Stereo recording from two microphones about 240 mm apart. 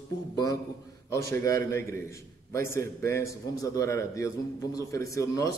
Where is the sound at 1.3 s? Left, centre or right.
Centre.